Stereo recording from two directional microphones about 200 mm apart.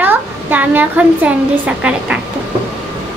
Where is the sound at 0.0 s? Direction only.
10° right (ahead or behind).